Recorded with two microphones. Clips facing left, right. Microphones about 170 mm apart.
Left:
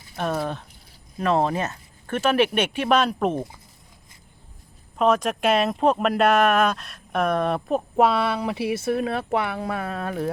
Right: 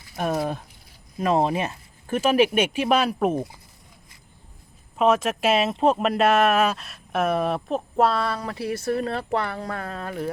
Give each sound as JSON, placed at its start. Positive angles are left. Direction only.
{"t": 0.2, "sound": "speech", "side_deg": -10}
{"t": 4.9, "sound": "speech", "side_deg": -5}
{"t": 8.4, "sound": "speech", "side_deg": 15}
{"t": 8.7, "sound": "speech", "side_deg": 0}